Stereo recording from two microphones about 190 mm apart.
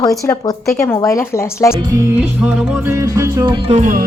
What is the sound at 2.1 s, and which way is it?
Music, 5° right (ahead or behind).